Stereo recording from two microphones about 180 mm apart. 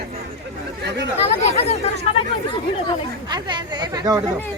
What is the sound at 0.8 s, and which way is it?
Speech, 75° right (ahead or behind).